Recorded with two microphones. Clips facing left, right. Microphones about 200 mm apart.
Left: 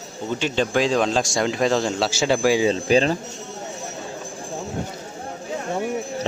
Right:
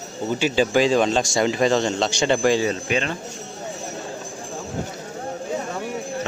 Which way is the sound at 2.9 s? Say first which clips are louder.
Left 6 dB; 35° left (ahead or behind).